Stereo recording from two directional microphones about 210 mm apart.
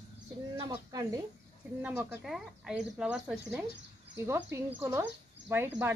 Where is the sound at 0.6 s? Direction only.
15° right (ahead or behind).